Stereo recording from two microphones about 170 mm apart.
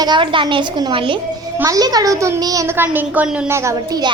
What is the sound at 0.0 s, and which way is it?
A woman's voice, 25° right (ahead or behind).